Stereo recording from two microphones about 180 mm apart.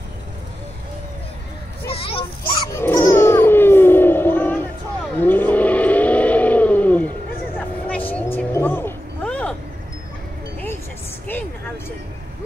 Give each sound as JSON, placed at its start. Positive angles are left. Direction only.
{"t": 1.9, "sound": "children playing", "side_deg": 30}
{"t": 2.7, "sound": "a sound", "side_deg": 15}
{"t": 5.2, "sound": "vehicle", "side_deg": 10}